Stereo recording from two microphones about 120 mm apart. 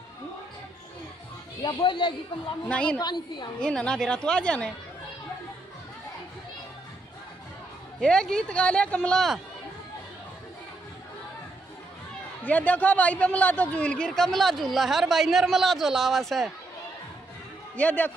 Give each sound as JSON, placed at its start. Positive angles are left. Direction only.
{"t": 1.6, "sound": "speech", "side_deg": 35}
{"t": 2.7, "sound": "speech", "side_deg": 10}
{"t": 3.0, "sound": "speech", "side_deg": 35}
{"t": 3.6, "sound": "speech", "side_deg": 5}
{"t": 8.0, "sound": "speech", "side_deg": 5}
{"t": 12.4, "sound": "a man's voice", "side_deg": 15}
{"t": 17.7, "sound": "speech", "side_deg": 15}